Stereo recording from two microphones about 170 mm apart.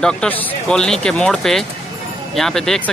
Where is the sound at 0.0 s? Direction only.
5° left (ahead or behind).